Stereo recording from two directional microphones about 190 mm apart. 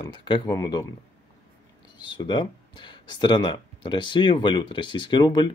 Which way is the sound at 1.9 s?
25° left (ahead or behind).